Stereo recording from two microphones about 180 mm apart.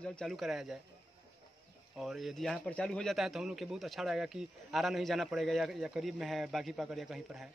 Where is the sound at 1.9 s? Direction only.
Centre (ahead or behind).